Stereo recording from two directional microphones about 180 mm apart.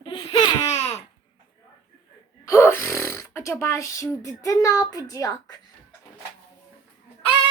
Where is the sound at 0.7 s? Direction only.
35° left (ahead or behind).